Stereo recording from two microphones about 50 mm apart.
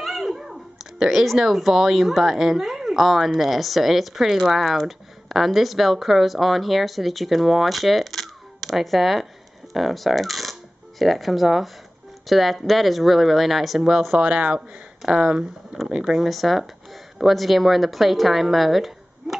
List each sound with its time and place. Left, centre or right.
0.0 s speech: centre
14.1 s speech: right
15.0 s speech: centre